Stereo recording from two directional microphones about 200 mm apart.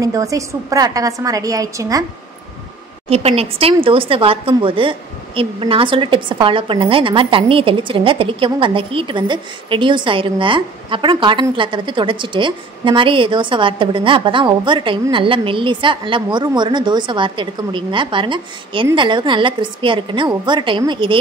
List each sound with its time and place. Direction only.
0.0 s a woman's voice: 15° right (ahead or behind)
3.1 s a woman's voice: 30° right (ahead or behind)